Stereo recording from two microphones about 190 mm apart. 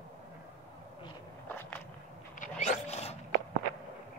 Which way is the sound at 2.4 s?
35° left (ahead or behind).